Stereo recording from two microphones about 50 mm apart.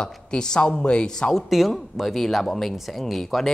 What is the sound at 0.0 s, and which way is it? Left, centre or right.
A man's voice, centre.